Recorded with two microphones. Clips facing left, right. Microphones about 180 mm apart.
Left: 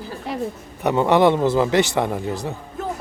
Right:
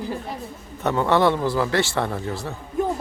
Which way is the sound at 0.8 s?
20° left (ahead or behind).